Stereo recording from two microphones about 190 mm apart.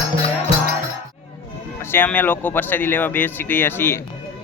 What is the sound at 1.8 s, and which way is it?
Speech, 10° left (ahead or behind).